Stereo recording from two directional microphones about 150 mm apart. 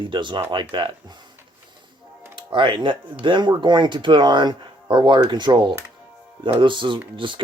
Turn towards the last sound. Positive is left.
turn(degrees=-35)  # may be behind; listen again after turning